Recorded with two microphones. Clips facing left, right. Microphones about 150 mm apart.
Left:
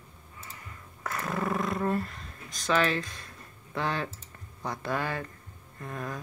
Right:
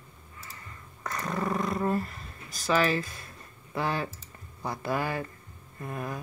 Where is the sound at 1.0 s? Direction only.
5° left (ahead or behind).